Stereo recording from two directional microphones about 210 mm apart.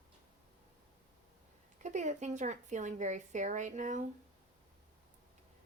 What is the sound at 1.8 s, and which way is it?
Speech, 35° right (ahead or behind).